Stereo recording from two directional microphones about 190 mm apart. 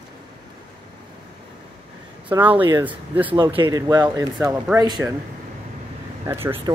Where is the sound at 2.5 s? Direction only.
25° right (ahead or behind).